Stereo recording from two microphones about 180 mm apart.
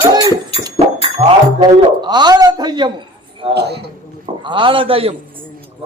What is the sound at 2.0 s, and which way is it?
Speech, 25° right (ahead or behind).